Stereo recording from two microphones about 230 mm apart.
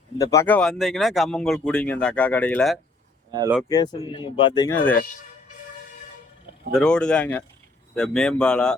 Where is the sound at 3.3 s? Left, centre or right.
Centre.